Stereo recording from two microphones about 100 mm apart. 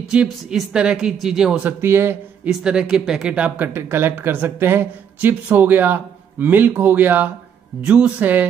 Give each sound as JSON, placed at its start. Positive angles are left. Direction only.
{"t": 0.1, "sound": "speech", "side_deg": -10}
{"t": 1.6, "sound": "speech", "side_deg": -20}
{"t": 2.6, "sound": "speech", "side_deg": -10}